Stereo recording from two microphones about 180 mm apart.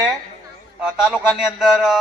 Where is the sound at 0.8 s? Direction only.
5° right (ahead or behind).